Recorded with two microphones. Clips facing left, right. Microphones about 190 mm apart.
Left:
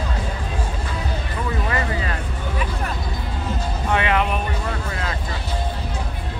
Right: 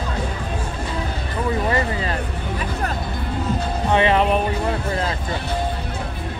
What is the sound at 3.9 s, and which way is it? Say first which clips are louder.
Music: right 3 dB; 30° right (ahead or behind).